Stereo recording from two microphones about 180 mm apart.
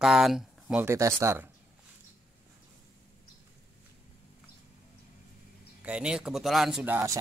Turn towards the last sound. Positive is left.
turn(degrees=-10)  # may be behind; listen again after turning